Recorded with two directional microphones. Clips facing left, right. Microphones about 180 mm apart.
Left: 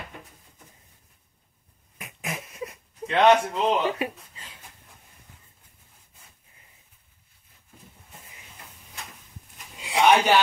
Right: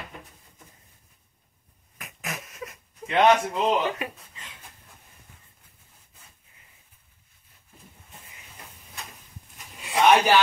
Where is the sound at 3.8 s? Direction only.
30° left (ahead or behind).